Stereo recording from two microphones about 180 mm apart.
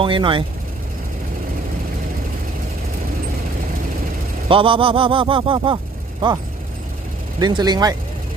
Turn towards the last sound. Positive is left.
turn(degrees=-20)  # may be behind; listen again after turning